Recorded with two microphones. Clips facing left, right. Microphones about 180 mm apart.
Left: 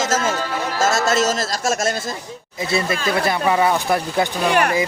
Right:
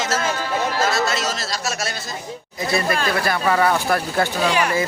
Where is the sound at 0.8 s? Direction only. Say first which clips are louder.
Left 4 dB; 45° left (ahead or behind).